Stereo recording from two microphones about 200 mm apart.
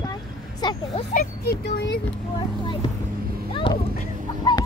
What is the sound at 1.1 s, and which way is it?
Speech, 50° left (ahead or behind).